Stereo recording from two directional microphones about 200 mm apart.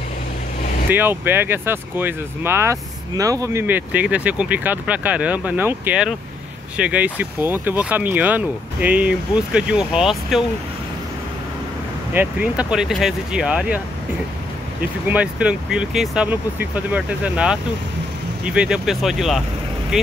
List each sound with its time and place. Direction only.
0.8 s speech: 10° right (ahead or behind)
12.1 s speech: 10° right (ahead or behind)
15.0 s speech: 5° right (ahead or behind)